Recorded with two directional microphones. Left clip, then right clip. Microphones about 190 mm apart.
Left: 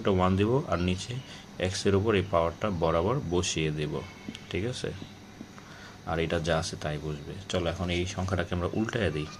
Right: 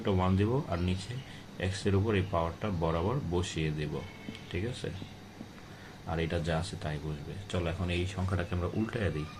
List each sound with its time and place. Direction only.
0.0 s speech: 35° left (ahead or behind)
6.1 s speech: 35° left (ahead or behind)